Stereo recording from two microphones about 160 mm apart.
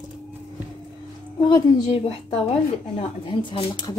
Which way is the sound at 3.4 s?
30° left (ahead or behind).